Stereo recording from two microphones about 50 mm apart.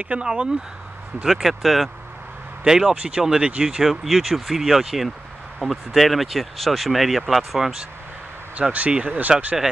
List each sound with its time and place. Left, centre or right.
0.0 s speech: right
1.2 s speech: centre
2.6 s speech: centre
3.8 s speech: centre
8.5 s speech: right